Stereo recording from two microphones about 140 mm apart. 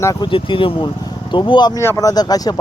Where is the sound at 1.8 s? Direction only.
20° left (ahead or behind).